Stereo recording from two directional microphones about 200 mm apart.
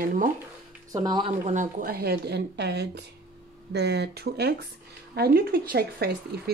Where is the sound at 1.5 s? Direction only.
40° right (ahead or behind).